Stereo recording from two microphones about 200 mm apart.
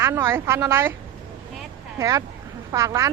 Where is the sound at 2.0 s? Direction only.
15° right (ahead or behind).